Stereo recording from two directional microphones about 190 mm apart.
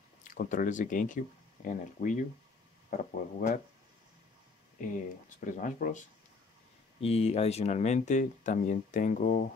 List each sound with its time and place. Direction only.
0.2 s speech: 45° left (ahead or behind)
5.4 s speech: 45° left (ahead or behind)